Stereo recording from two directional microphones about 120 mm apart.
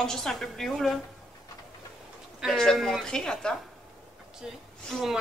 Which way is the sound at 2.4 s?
5° left (ahead or behind).